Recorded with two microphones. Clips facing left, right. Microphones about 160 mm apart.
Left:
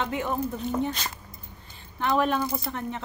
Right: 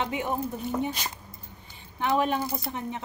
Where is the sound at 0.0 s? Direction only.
15° right (ahead or behind).